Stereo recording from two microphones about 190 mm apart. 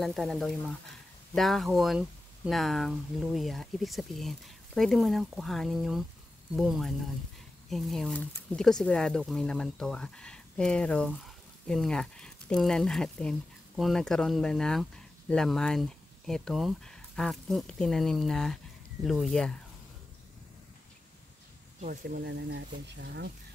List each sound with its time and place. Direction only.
0.0 s speech: centre (ahead or behind)
22.0 s speech: 60° right (ahead or behind)